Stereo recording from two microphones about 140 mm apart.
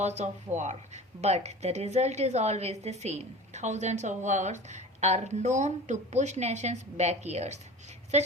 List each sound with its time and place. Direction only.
0.0 s speech: 55° right (ahead or behind)